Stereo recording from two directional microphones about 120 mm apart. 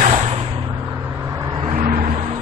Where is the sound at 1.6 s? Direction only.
80° right.